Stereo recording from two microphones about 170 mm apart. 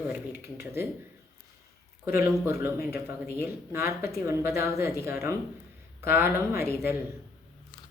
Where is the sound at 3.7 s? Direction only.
15° right (ahead or behind).